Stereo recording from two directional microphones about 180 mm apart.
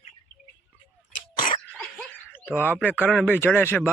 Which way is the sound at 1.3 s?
50° left (ahead or behind).